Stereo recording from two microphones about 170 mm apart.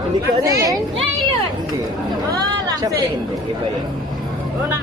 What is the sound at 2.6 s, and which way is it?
Chatter, 20° right (ahead or behind).